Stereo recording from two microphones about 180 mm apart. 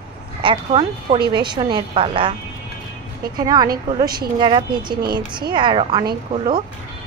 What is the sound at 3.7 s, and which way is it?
Speech, 55° right (ahead or behind).